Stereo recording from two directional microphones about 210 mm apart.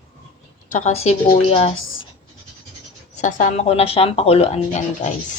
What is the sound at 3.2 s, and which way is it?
Speech, 35° left (ahead or behind).